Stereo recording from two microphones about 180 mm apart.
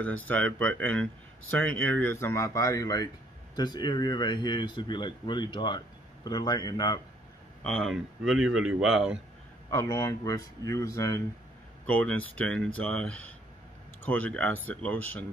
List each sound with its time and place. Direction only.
0.0 s speech: 10° left (ahead or behind)
7.6 s speech: 5° left (ahead or behind)
9.7 s speech: 15° left (ahead or behind)